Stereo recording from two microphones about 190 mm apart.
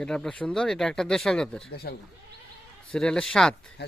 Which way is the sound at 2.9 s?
5° left (ahead or behind).